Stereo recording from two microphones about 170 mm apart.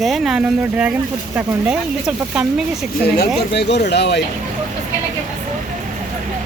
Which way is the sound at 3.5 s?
85° left.